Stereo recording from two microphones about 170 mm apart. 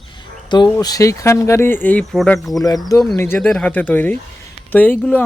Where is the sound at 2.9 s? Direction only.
20° left (ahead or behind).